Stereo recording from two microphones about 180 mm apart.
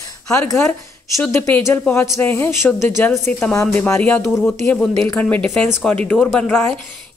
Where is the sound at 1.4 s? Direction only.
10° left (ahead or behind).